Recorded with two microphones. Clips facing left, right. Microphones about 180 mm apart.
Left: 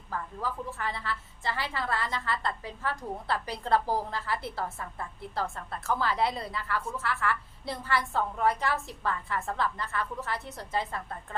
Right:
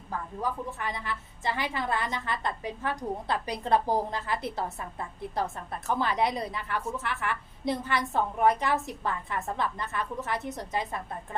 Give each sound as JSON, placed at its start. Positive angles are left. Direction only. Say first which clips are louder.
{"t": 0.4, "sound": "a woman's voice", "louder": "right 2 dB", "side_deg": -15}